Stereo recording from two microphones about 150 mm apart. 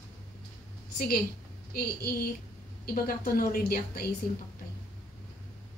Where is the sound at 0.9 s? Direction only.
75° left (ahead or behind).